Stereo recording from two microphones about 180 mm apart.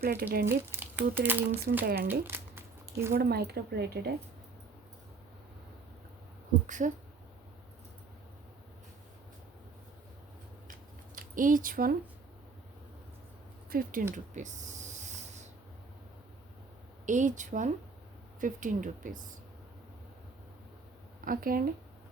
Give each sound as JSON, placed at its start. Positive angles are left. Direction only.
{"t": 0.0, "sound": "speech", "side_deg": -55}
{"t": 0.4, "sound": "speech", "side_deg": -10}
{"t": 1.8, "sound": "speech", "side_deg": -60}
{"t": 2.2, "sound": "a sound", "side_deg": -10}
{"t": 3.1, "sound": "speech", "side_deg": -60}
{"t": 6.7, "sound": "speech", "side_deg": -45}
{"t": 11.1, "sound": "speech", "side_deg": -50}
{"t": 13.7, "sound": "speech", "side_deg": -55}
{"t": 14.3, "sound": "a sound", "side_deg": -40}
{"t": 17.1, "sound": "speech", "side_deg": -45}
{"t": 21.2, "sound": "speech", "side_deg": -50}